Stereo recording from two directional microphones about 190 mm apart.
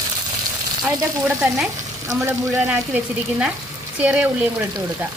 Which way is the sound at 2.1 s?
10° right (ahead or behind).